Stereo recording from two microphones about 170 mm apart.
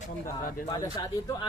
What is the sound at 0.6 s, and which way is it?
Speech, 20° left (ahead or behind).